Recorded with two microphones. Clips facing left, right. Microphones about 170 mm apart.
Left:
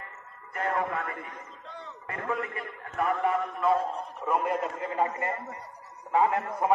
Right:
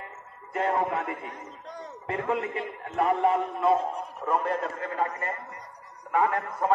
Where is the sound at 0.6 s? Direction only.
25° right (ahead or behind).